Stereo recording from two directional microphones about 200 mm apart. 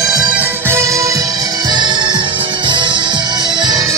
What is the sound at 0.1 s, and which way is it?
Music, 5° right (ahead or behind).